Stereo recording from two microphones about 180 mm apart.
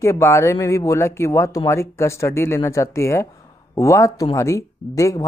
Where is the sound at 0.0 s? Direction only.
15° left (ahead or behind).